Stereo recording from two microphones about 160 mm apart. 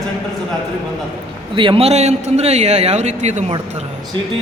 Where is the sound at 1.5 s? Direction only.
30° right (ahead or behind).